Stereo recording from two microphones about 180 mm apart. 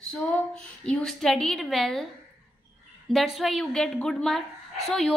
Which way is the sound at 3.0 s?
Centre (ahead or behind).